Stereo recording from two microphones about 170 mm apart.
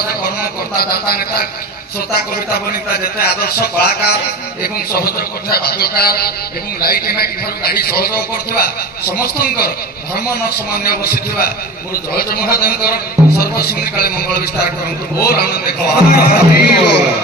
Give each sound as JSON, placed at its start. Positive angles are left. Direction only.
{"t": 0.4, "sound": "a man's voice", "side_deg": 60}